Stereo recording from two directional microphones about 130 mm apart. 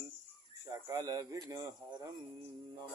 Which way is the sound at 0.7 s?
25° right (ahead or behind).